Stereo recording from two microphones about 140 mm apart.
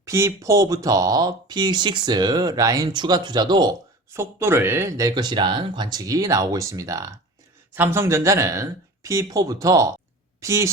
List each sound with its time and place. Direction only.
0.0 s speech: 20° right (ahead or behind)
4.1 s speech: 20° right (ahead or behind)